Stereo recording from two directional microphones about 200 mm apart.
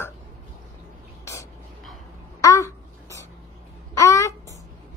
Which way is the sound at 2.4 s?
15° left (ahead or behind).